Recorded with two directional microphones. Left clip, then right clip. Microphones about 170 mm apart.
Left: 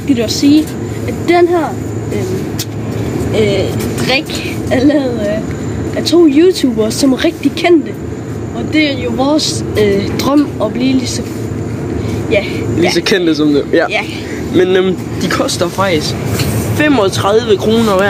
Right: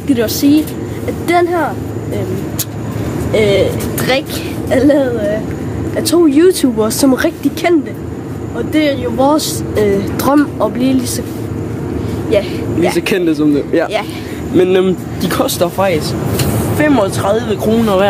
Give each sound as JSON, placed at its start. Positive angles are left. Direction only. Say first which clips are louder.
{"t": 0.1, "sound": "speech", "louder": "left 1 dB", "side_deg": -20}
{"t": 3.3, "sound": "speech", "louder": "right 2 dB", "side_deg": -50}
{"t": 4.6, "sound": "speech", "louder": "right 1 dB", "side_deg": -15}
{"t": 6.0, "sound": "speech", "louder": "left 1 dB", "side_deg": -20}
{"t": 8.7, "sound": "speech", "louder": "even", "side_deg": -20}
{"t": 12.3, "sound": "speech", "louder": "even", "side_deg": -15}
{"t": 14.5, "sound": "speech", "louder": "even", "side_deg": -30}
{"t": 16.7, "sound": "speech", "louder": "left 1 dB", "side_deg": -5}
{"t": 17.6, "sound": "speech", "louder": "left 1 dB", "side_deg": -20}